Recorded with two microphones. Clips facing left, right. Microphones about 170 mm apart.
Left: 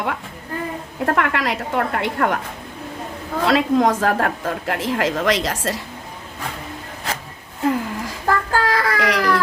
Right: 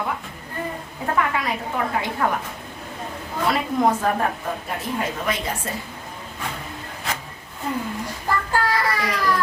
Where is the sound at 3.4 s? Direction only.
90° left.